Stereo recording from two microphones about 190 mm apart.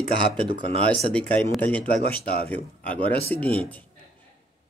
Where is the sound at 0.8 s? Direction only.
5° left (ahead or behind).